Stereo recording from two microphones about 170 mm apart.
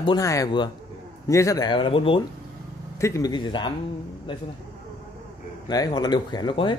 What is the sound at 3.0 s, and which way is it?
Speech, 20° left (ahead or behind).